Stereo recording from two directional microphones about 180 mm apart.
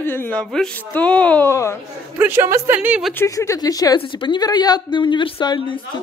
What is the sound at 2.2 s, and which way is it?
Speech, 15° right (ahead or behind).